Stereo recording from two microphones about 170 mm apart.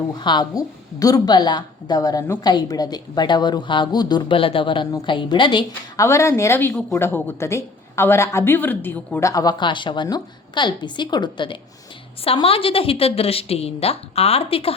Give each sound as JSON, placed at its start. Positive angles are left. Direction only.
{"t": 0.1, "sound": "a woman's voice", "side_deg": 25}